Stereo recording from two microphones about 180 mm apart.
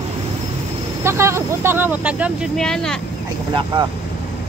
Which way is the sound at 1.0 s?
15° right (ahead or behind).